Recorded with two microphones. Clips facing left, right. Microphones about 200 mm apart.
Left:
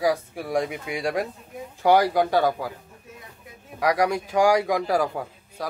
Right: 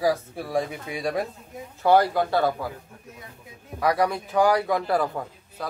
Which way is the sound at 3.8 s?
15° left (ahead or behind).